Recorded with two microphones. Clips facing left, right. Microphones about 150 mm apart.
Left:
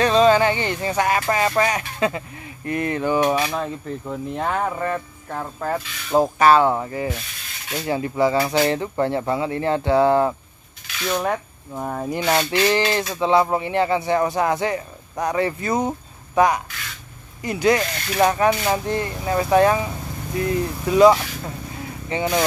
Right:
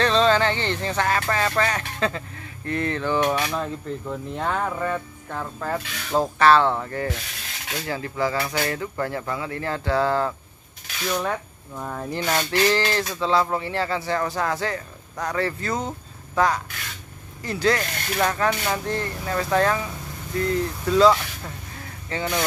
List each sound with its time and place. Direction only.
0.0 s speech: 10° left (ahead or behind)
7.8 s speech: 20° left (ahead or behind)